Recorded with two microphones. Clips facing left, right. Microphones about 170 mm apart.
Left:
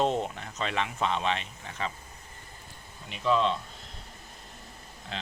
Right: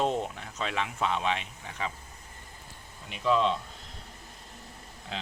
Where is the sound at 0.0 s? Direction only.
5° right (ahead or behind).